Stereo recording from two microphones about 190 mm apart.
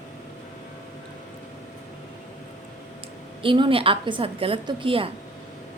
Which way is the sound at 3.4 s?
25° right (ahead or behind).